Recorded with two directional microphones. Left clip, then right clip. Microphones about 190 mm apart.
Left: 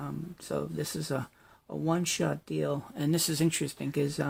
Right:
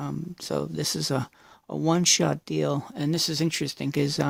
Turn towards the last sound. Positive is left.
turn(degrees=-60)  # may be behind; listen again after turning